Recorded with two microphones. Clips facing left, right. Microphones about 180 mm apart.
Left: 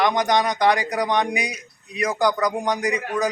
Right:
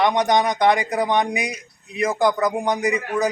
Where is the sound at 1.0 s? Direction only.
5° right (ahead or behind).